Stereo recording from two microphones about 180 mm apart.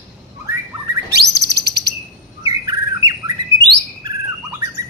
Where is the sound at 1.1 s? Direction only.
70° right (ahead or behind).